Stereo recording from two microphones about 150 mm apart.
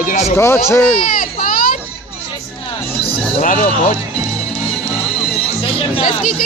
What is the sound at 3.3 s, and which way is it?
Speech, 60° left (ahead or behind).